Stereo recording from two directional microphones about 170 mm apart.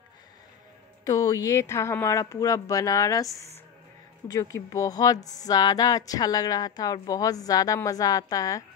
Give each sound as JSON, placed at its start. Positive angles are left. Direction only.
{"t": 1.0, "sound": "speech", "side_deg": 20}
{"t": 4.3, "sound": "speech", "side_deg": 20}